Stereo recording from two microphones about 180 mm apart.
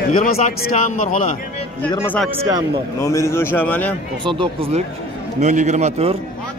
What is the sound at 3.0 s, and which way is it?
Speech, 15° left (ahead or behind).